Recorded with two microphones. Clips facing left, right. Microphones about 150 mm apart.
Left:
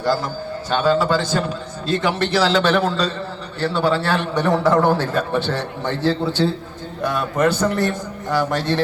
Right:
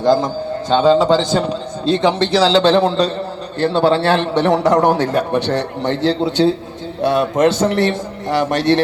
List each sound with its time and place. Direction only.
0.0 s a man's voice: 20° right (ahead or behind)
7.3 s a man's voice: 20° right (ahead or behind)
7.7 s a man's voice: 90° right
8.3 s a man's voice: 20° right (ahead or behind)
8.5 s a man's voice: 80° right